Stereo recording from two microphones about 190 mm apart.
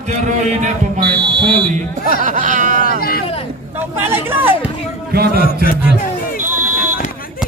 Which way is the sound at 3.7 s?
10° right (ahead or behind).